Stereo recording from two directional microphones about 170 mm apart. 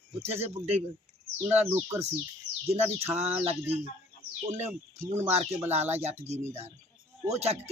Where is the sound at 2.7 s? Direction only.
35° right (ahead or behind).